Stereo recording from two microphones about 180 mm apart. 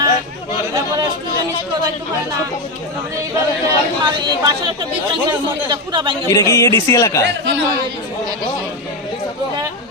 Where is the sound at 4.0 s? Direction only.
25° right (ahead or behind).